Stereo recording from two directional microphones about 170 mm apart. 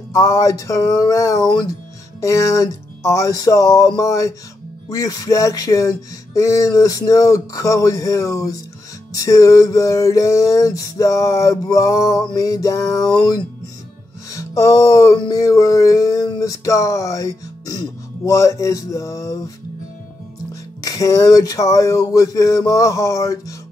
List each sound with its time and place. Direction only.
0.1 s speech: 15° left (ahead or behind)
20.8 s speech: 20° left (ahead or behind)